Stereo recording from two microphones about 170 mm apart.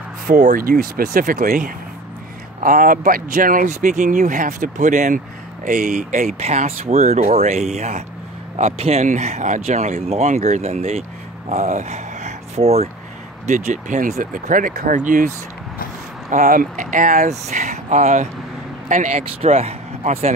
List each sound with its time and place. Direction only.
0.3 s speech: 50° right (ahead or behind)